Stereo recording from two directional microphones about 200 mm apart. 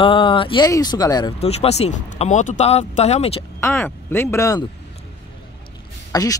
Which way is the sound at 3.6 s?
10° left (ahead or behind).